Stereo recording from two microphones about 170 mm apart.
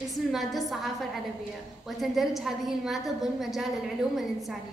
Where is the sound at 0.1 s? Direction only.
Centre (ahead or behind).